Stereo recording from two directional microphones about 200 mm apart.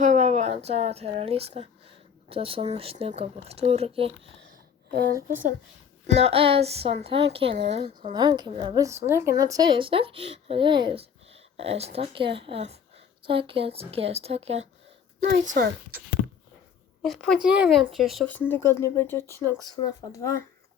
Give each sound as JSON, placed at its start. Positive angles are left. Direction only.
{"t": 0.0, "sound": "speech", "side_deg": -35}
{"t": 6.1, "sound": "speech", "side_deg": -30}
{"t": 15.3, "sound": "speech", "side_deg": -55}
{"t": 17.1, "sound": "speech", "side_deg": 0}
{"t": 19.5, "sound": "speech", "side_deg": -15}
{"t": 19.7, "sound": "speech", "side_deg": 20}